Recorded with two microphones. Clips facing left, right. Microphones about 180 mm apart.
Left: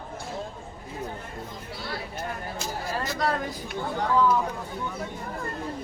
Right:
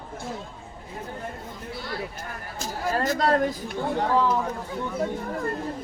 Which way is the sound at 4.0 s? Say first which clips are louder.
Left 1 dB; 30° right (ahead or behind).